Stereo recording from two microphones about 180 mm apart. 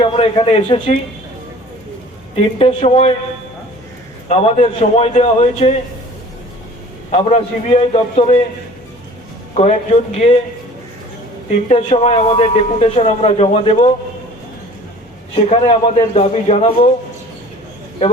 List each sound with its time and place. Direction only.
0.0 s a man's voice: 30° left (ahead or behind)
2.3 s a man's voice: 35° left (ahead or behind)
4.3 s a man's voice: 35° left (ahead or behind)
7.1 s a man's voice: 35° left (ahead or behind)
9.6 s a man's voice: 35° left (ahead or behind)
11.7 s a man's voice: 35° left (ahead or behind)
15.4 s a man's voice: 35° left (ahead or behind)